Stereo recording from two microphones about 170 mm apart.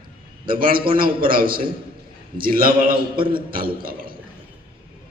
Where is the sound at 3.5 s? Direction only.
60° right (ahead or behind).